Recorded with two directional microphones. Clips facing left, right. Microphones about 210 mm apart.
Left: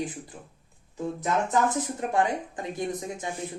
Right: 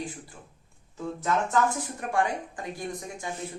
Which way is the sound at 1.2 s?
20° left (ahead or behind).